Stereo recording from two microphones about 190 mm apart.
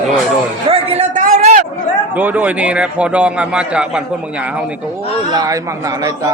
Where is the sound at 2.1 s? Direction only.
10° right (ahead or behind).